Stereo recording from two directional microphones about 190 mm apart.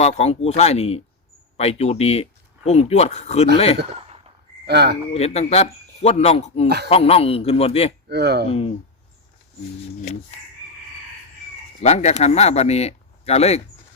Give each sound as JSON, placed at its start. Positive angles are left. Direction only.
{"t": 0.0, "sound": "speech", "side_deg": 35}
{"t": 4.6, "sound": "speech", "side_deg": -60}
{"t": 5.1, "sound": "speech", "side_deg": 35}
{"t": 8.0, "sound": "speech", "side_deg": -60}
{"t": 8.4, "sound": "speech", "side_deg": 30}
{"t": 11.8, "sound": "speech", "side_deg": 35}